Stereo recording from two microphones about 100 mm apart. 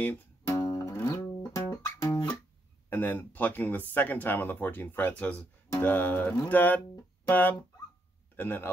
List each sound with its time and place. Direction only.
0.5 s music: 35° left (ahead or behind)
2.9 s speech: 20° left (ahead or behind)